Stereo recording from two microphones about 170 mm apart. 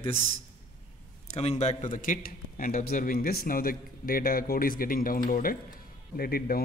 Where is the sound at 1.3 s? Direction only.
40° left (ahead or behind).